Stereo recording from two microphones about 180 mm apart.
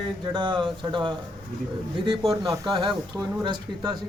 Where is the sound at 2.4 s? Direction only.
20° right (ahead or behind).